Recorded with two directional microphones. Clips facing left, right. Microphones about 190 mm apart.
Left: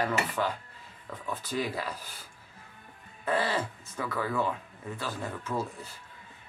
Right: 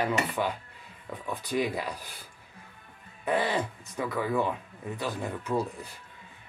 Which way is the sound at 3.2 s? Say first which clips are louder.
Right 2 dB; 15° right (ahead or behind).